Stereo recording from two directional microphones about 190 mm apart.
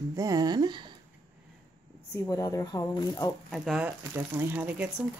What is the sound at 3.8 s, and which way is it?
Speech, 10° right (ahead or behind).